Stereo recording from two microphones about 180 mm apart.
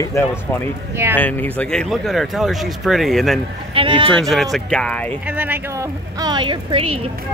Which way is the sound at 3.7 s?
30° right (ahead or behind).